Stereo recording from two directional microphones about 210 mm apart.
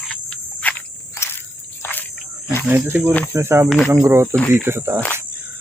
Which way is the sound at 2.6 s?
10° right (ahead or behind).